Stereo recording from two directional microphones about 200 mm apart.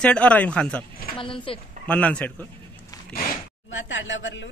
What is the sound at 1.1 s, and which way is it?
Speech, 25° left (ahead or behind).